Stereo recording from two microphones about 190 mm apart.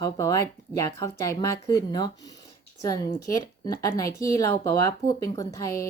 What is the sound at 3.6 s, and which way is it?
Speech, 20° left (ahead or behind).